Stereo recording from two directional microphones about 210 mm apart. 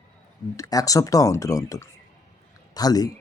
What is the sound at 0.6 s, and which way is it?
Speech, 15° left (ahead or behind).